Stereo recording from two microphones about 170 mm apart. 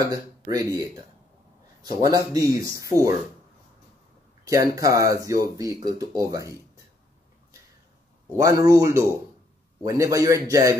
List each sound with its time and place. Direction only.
0.1 s speech: 20° right (ahead or behind)
2.0 s speech: 20° right (ahead or behind)
4.5 s speech: 20° right (ahead or behind)
8.4 s speech: 20° right (ahead or behind)